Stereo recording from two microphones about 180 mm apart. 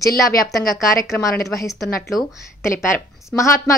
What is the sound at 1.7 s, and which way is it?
Speech, centre (ahead or behind).